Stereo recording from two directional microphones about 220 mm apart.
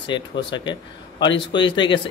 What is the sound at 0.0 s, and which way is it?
Speech, 20° left (ahead or behind).